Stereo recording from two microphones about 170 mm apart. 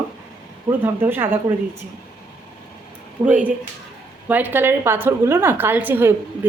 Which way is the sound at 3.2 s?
25° right (ahead or behind).